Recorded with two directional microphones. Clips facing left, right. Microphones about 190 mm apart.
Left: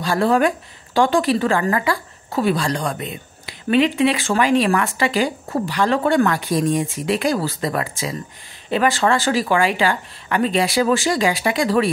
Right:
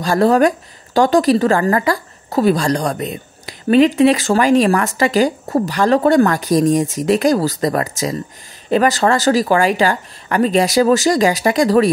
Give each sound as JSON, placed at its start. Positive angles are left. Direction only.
{"t": 0.0, "sound": "a woman's voice", "side_deg": -40}